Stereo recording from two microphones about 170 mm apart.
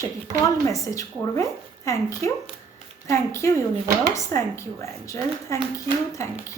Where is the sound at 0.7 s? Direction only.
20° left (ahead or behind).